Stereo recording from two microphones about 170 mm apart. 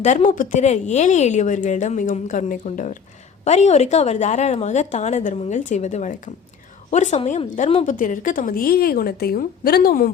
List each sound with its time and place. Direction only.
0.0 s speech: 45° left (ahead or behind)
7.9 s a woman's voice: 50° left (ahead or behind)